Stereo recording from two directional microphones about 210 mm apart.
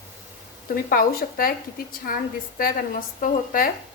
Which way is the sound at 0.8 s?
45° left (ahead or behind).